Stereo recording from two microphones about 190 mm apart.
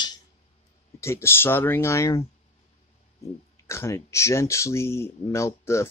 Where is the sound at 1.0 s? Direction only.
15° left (ahead or behind).